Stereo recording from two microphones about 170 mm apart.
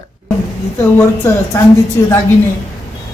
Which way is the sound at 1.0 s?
15° left (ahead or behind).